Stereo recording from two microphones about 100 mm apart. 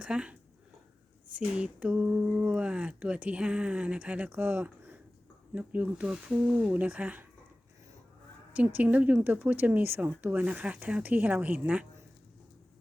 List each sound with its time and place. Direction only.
0.0 s speech: 10° right (ahead or behind)
8.5 s speech: 15° right (ahead or behind)